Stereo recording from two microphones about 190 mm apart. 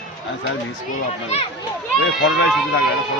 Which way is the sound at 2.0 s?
90° left.